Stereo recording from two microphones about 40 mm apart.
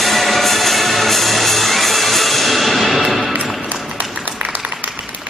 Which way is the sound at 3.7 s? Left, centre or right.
Right.